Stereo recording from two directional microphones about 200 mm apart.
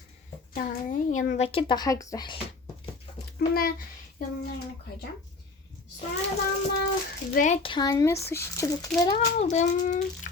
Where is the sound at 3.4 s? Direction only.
45° left (ahead or behind).